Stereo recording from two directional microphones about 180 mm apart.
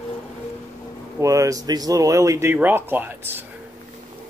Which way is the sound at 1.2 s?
15° right (ahead or behind).